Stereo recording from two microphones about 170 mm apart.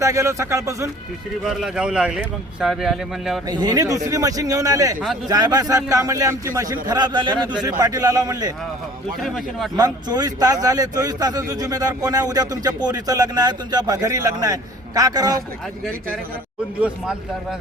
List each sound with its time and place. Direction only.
0.0 s speech: 20° right (ahead or behind)
1.5 s speech: 5° right (ahead or behind)
3.5 s a man's voice: 25° right (ahead or behind)
9.2 s speech: centre (ahead or behind)
9.7 s a man's voice: 25° right (ahead or behind)